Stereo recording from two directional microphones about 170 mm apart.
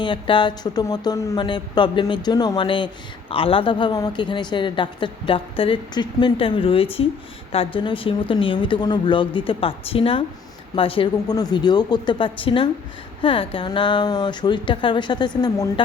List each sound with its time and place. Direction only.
0.0 s speech: 30° left (ahead or behind)